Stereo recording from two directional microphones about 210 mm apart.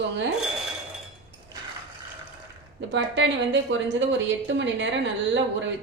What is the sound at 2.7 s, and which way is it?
A woman's voice, 60° right (ahead or behind).